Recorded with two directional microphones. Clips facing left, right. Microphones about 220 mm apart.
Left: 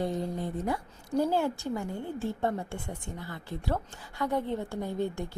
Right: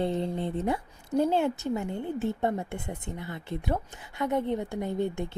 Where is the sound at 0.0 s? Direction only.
25° right (ahead or behind).